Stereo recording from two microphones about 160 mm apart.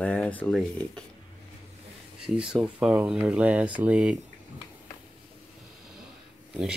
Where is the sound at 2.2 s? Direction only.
5° right (ahead or behind).